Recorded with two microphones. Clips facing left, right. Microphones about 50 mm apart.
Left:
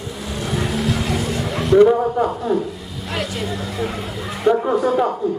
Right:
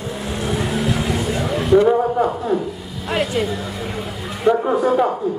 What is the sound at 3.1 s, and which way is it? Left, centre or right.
Vehicle, centre.